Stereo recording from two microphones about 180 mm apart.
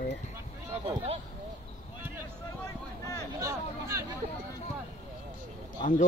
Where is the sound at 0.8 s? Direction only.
35° right (ahead or behind).